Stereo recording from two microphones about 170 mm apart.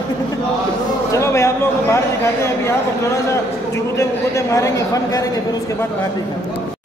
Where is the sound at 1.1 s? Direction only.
15° left (ahead or behind).